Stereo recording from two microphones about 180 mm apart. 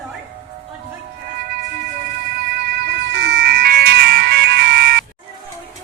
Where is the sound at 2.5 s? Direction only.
60° right (ahead or behind).